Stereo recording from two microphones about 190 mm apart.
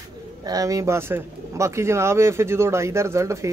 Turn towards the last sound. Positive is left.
turn(degrees=-15)  # may be behind; listen again after turning